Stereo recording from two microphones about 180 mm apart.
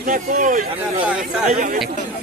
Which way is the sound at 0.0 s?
50° right (ahead or behind).